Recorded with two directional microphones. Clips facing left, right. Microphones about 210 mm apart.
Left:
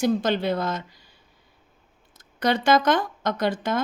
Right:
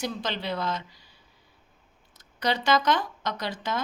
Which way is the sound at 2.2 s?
50° left (ahead or behind).